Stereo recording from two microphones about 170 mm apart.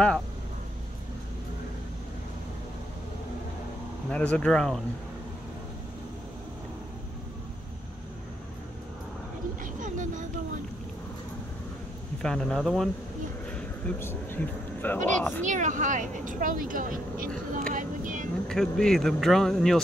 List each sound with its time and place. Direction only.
4.1 s speech: 10° left (ahead or behind)
9.6 s vehicle: 50° right (ahead or behind)
12.2 s speech: 5° left (ahead or behind)
15.4 s speech: 45° right (ahead or behind)
18.5 s speech: 5° left (ahead or behind)